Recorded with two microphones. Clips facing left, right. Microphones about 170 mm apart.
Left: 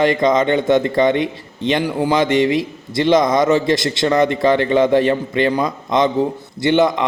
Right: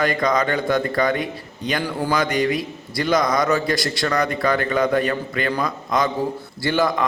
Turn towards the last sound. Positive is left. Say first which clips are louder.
# left 6 dB
turn(degrees=20)  # may be behind; listen again after turning